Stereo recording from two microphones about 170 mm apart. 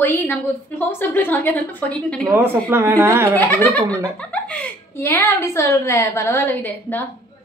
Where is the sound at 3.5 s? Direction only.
10° left (ahead or behind).